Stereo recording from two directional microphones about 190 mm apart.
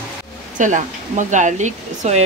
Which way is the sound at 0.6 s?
40° right (ahead or behind).